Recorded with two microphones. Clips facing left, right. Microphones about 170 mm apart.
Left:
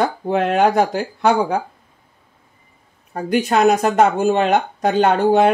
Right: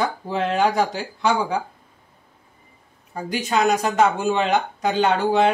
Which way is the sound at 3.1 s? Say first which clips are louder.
Left 6 dB; 60° left (ahead or behind).